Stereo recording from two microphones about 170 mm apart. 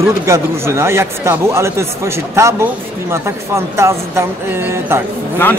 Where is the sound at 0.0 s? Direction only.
15° right (ahead or behind).